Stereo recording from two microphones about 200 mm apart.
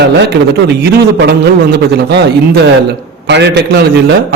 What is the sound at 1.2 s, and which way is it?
A man's voice, 55° right (ahead or behind).